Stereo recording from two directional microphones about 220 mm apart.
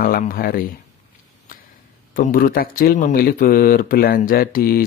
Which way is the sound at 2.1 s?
40° left (ahead or behind).